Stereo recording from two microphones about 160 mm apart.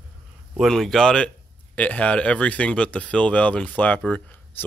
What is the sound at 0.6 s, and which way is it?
Speech, centre (ahead or behind).